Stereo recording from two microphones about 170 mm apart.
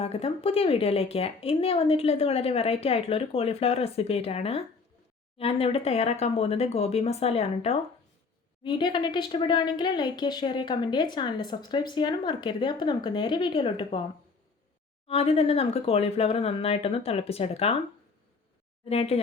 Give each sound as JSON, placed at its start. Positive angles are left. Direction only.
{"t": 0.0, "sound": "a woman's voice", "side_deg": 35}
{"t": 8.6, "sound": "speech", "side_deg": 25}
{"t": 15.0, "sound": "a woman's voice", "side_deg": 35}
{"t": 18.9, "sound": "a woman's voice", "side_deg": 35}